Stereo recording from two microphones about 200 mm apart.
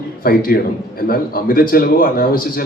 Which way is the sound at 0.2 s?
45° left (ahead or behind).